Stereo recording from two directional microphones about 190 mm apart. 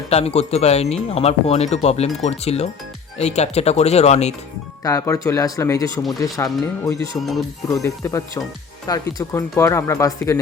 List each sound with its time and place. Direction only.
0.1 s speech: 35° left (ahead or behind)
4.8 s speech: 15° left (ahead or behind)
7.2 s speech: centre (ahead or behind)
7.7 s speech: 15° left (ahead or behind)